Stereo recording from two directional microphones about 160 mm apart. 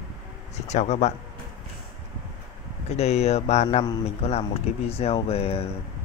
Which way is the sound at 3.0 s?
40° left (ahead or behind).